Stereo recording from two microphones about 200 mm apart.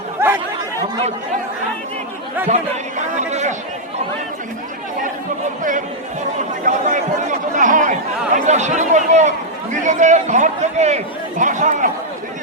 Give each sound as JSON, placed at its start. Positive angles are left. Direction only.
{"t": 0.2, "sound": "chatter", "side_deg": -10}
{"t": 3.2, "sound": "a man's voice", "side_deg": -35}
{"t": 6.7, "sound": "a man's voice", "side_deg": -35}